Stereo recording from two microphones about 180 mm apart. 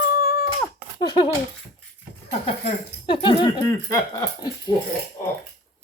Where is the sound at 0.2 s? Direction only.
55° left (ahead or behind).